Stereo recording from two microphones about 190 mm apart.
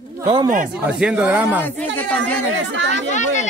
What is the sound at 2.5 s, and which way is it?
Speech, 75° right (ahead or behind).